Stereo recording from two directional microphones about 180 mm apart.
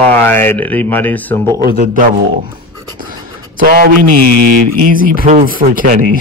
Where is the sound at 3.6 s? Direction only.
50° right (ahead or behind).